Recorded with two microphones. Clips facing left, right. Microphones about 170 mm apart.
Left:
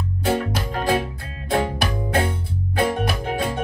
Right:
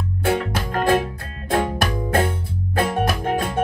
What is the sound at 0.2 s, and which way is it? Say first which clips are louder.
Music: right 1 dB; 55° right (ahead or behind).